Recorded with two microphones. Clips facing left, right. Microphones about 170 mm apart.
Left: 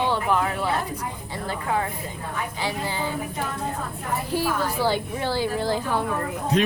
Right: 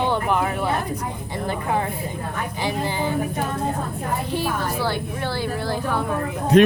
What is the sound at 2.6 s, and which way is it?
Speech, 20° right (ahead or behind).